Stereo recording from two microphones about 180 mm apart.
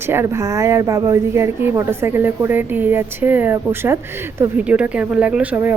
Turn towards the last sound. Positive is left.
turn(degrees=-10)  # may be behind; listen again after turning